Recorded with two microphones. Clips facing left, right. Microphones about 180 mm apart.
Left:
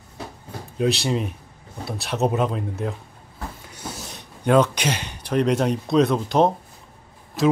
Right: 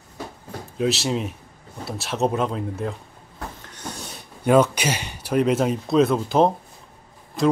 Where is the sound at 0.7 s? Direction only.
Centre (ahead or behind).